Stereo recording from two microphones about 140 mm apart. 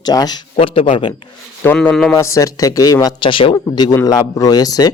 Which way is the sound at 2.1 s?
20° left (ahead or behind).